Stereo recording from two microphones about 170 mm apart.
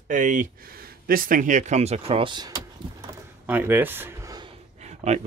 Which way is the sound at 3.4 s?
10° right (ahead or behind).